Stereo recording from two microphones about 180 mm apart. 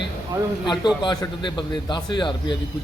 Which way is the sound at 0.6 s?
25° left (ahead or behind).